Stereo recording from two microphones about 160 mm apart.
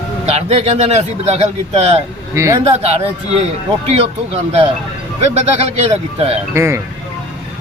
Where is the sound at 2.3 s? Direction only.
20° right (ahead or behind).